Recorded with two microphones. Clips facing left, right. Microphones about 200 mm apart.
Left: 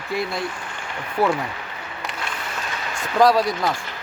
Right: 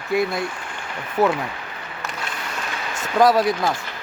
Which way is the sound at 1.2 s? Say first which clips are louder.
Right 1 dB; 20° right (ahead or behind).